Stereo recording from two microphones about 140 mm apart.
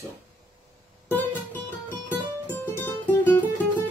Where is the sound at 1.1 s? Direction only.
15° left (ahead or behind).